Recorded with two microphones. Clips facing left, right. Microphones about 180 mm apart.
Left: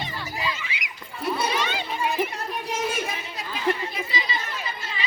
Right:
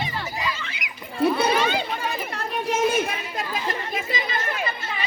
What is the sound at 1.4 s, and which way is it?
Chatter, 60° right (ahead or behind).